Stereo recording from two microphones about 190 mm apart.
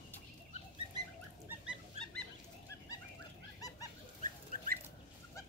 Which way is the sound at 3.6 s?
20° left (ahead or behind).